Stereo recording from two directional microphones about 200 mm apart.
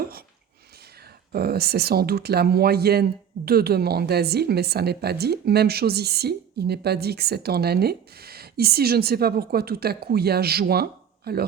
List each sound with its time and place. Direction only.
1.3 s speech: 50° right (ahead or behind)